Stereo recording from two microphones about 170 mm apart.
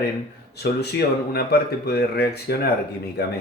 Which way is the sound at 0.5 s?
70° left (ahead or behind).